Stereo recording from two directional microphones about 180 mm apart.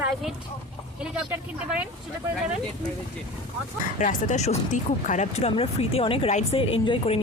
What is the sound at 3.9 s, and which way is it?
Speech, 45° left (ahead or behind).